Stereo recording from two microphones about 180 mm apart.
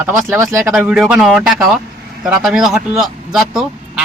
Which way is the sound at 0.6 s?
5° right (ahead or behind).